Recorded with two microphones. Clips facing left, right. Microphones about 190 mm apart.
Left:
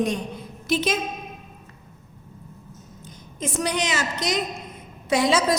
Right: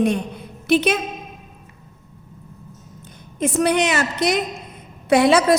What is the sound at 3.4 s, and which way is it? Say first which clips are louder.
A woman's voice: right 8 dB; 60° right (ahead or behind).